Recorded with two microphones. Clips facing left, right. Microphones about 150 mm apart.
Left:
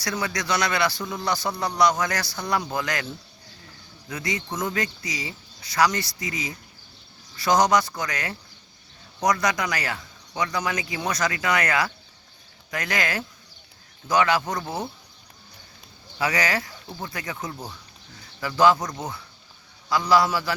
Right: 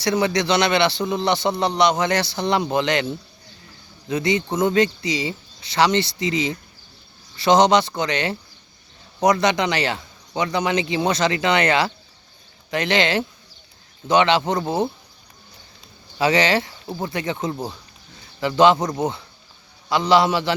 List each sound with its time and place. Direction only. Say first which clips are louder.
0.0 s a man's voice: right 9 dB; 25° right (ahead or behind)
4.1 s a man's voice: right 9 dB; 25° right (ahead or behind)
16.1 s a man's voice: right 7 dB; 25° right (ahead or behind)